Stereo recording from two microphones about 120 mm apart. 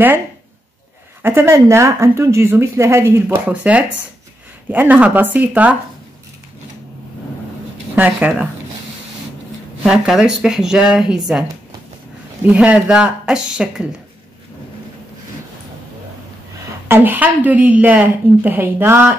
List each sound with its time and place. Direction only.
1.2 s a woman's voice: 20° right (ahead or behind)
7.9 s a woman's voice: 15° right (ahead or behind)
9.8 s speech: 5° right (ahead or behind)
12.4 s a woman's voice: 10° right (ahead or behind)
16.8 s a woman's voice: 20° right (ahead or behind)